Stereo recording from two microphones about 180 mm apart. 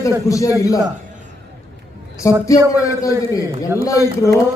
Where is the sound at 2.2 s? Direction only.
20° left (ahead or behind).